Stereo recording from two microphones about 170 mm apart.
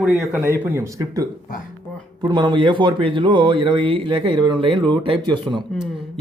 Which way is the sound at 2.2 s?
25° right (ahead or behind).